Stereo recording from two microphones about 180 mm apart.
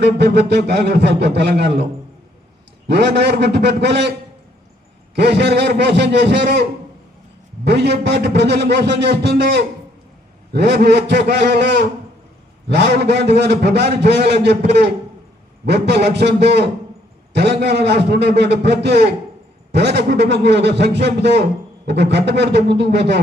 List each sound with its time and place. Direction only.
0.0 s a man's voice: 65° right (ahead or behind)
5.1 s a man's voice: 70° right (ahead or behind)
7.6 s a man's voice: 65° right (ahead or behind)